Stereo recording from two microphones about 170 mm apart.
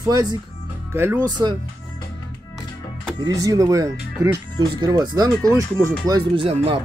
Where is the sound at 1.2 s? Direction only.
25° right (ahead or behind).